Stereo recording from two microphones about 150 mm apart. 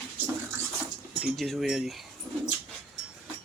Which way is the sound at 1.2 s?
Centre (ahead or behind).